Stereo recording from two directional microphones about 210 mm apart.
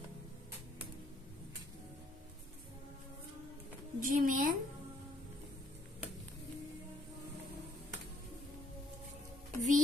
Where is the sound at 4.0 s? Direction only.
40° right (ahead or behind).